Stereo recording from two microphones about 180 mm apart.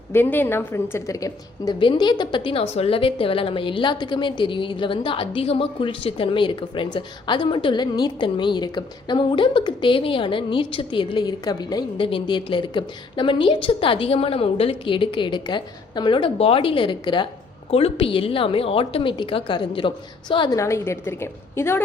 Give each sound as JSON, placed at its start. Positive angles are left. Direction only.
{"t": 0.1, "sound": "a woman's voice", "side_deg": 10}